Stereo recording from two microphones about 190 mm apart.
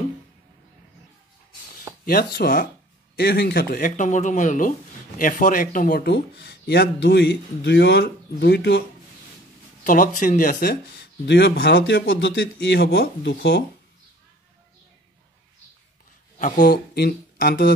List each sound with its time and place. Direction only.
2.0 s speech: 50° left (ahead or behind)
9.8 s speech: 45° left (ahead or behind); by 13.7 s 60° left (ahead or behind)
16.3 s speech: 45° left (ahead or behind)